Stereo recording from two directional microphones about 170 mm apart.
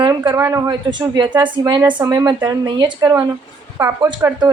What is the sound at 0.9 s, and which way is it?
A woman's voice, 25° right (ahead or behind).